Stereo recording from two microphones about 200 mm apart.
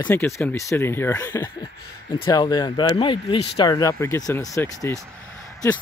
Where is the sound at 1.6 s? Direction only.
25° left (ahead or behind).